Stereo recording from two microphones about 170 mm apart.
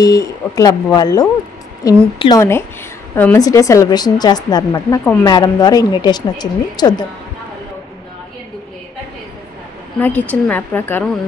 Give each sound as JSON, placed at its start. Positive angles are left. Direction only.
{"t": 0.0, "sound": "speech", "side_deg": 20}
{"t": 9.9, "sound": "speech", "side_deg": 10}